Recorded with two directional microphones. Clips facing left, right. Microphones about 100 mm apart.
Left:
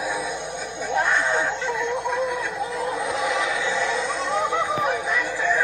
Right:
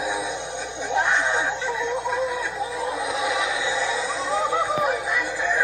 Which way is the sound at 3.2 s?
15° right (ahead or behind).